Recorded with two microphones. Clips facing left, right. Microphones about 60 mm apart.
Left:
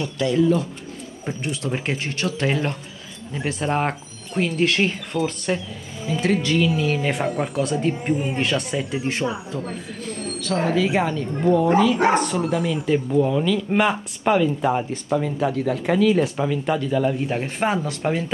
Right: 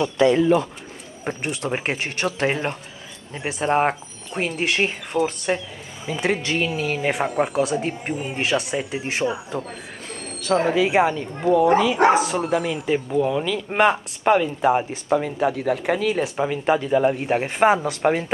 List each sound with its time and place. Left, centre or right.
0.0 s speech: right
1.2 s speech: right
10.8 s speech: centre